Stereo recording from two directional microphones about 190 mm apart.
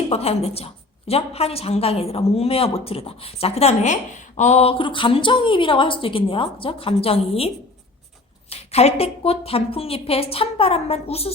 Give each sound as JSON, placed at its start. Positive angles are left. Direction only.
{"t": 0.1, "sound": "a woman's voice", "side_deg": 35}